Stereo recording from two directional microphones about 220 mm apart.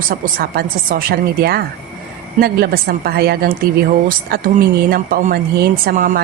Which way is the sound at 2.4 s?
45° right (ahead or behind).